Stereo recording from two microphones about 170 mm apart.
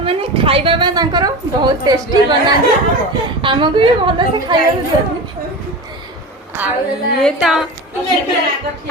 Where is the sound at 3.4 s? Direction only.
30° right (ahead or behind).